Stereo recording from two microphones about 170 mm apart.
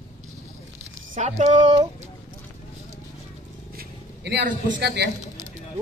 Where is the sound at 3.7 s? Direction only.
80° right.